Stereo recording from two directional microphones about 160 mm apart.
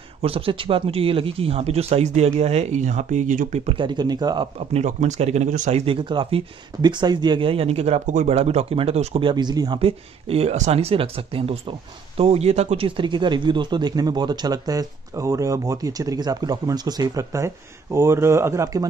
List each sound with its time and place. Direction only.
0.2 s speech: 35° right (ahead or behind); by 3.6 s 50° right (ahead or behind)
3.6 s speech: 30° right (ahead or behind)
4.7 s speech: 45° right (ahead or behind)
9.3 s speech: 25° right (ahead or behind)